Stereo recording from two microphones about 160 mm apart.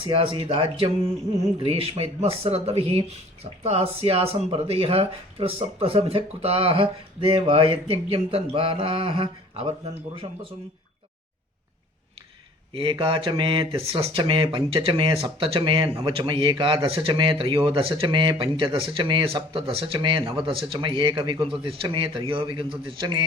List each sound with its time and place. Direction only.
0.0 s speech: 35° right (ahead or behind)
12.7 s a man's voice: 35° right (ahead or behind)